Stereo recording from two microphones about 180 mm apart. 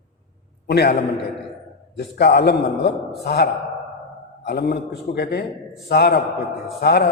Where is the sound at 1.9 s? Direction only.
65° left (ahead or behind).